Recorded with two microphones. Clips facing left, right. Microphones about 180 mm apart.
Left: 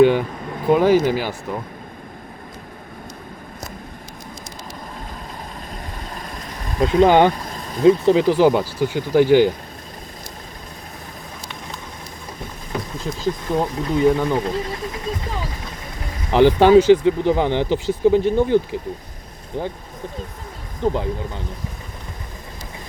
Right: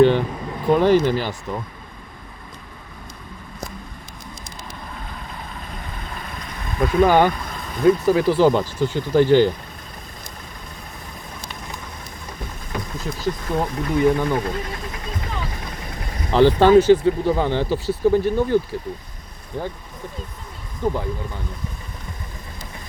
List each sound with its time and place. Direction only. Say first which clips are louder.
0.0 s a sound: left 1 dB; 10° left (ahead or behind)
0.7 s speech: left 1 dB; 10° left (ahead or behind)
6.1 s vehicle: left 1 dB; 40° left (ahead or behind)
6.8 s speech: left 2 dB; 25° left (ahead or behind)
7.3 s vehicle: left 1 dB; 35° left (ahead or behind)
7.8 s speech: left 2 dB; 20° left (ahead or behind)
13.1 s speech: left 2 dB; 15° left (ahead or behind)
16.3 s speech: left 1 dB; 15° left (ahead or behind)
20.8 s speech: left 2 dB; 20° left (ahead or behind)